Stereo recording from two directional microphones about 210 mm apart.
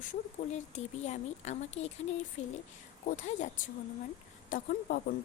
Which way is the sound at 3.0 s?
35° left (ahead or behind).